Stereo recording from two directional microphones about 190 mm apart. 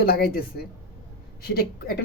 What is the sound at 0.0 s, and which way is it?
A woman's voice, 55° left (ahead or behind).